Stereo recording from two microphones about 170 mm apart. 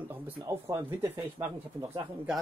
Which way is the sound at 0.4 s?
20° right (ahead or behind).